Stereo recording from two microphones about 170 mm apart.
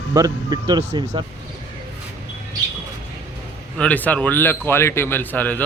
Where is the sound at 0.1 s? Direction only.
20° right (ahead or behind).